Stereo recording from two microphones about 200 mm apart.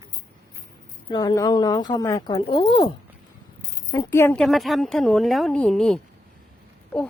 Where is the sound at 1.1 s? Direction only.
20° left (ahead or behind).